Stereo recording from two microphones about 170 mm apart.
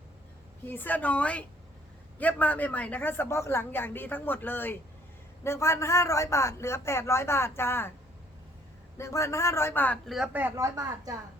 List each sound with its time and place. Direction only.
0.7 s a woman's voice: 10° left (ahead or behind)
9.0 s a woman's voice: 15° left (ahead or behind)
10.1 s speech: 5° right (ahead or behind)